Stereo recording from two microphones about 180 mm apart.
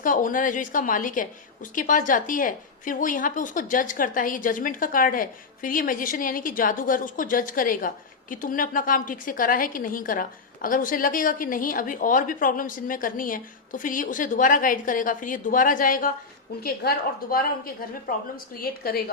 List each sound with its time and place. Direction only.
0.0 s a woman's voice: 50° left (ahead or behind)
18.6 s a woman's voice: 55° left (ahead or behind)